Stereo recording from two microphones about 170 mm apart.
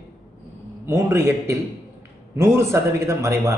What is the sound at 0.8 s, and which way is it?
A man's voice, 15° right (ahead or behind).